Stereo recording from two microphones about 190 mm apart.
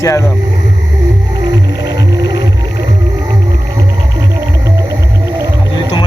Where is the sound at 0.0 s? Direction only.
15° left (ahead or behind).